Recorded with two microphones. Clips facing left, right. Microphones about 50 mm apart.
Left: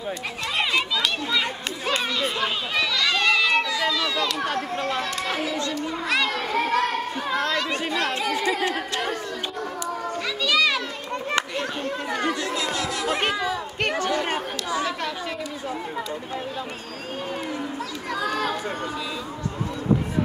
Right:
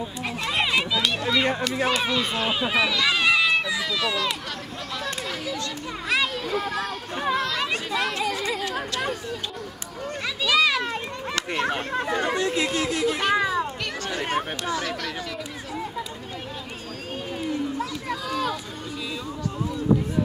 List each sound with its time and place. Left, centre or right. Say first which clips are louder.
0.6 s a sound: even; centre
2.0 s speech: even; centre
4.9 s speech: left 4 dB; left
6.0 s a child's voice: even; centre
6.5 s a child's voice: left 5 dB; left
8.5 s speech: left 2 dB; left
10.4 s children playing: right 1 dB; centre
11.5 s speech: right 2 dB; right
13.0 s speech: left 1 dB; left
13.3 s children playing: right 4 dB; right
13.8 s chatter: left 6 dB; left
18.2 s run: left 3 dB; left